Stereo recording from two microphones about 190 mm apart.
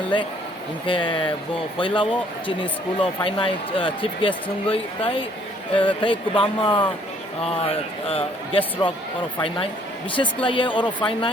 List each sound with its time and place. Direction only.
0.9 s speech: 25° left (ahead or behind)
10.2 s speech: 25° left (ahead or behind)